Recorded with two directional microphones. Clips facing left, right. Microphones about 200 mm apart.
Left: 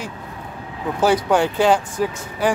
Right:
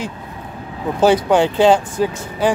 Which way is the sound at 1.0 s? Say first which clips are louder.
Right 4 dB; 25° right (ahead or behind).